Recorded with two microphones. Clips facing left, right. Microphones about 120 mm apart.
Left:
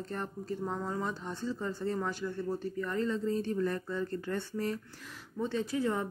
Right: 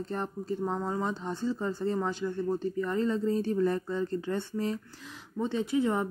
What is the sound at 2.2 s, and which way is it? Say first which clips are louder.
Speech: right 4 dB; 25° right (ahead or behind).